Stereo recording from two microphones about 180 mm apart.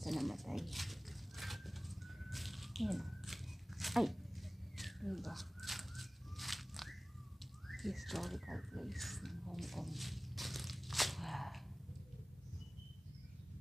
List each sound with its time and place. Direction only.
0.0 s dog: centre (ahead or behind)
4.7 s a sound: centre (ahead or behind)
7.6 s bird: centre (ahead or behind)